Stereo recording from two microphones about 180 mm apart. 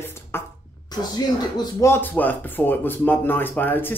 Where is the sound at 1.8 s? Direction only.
10° left (ahead or behind).